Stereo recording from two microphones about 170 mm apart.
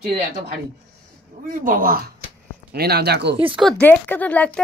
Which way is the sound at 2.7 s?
70° right (ahead or behind).